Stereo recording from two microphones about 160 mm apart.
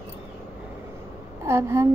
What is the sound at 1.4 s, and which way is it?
Speech, 15° right (ahead or behind).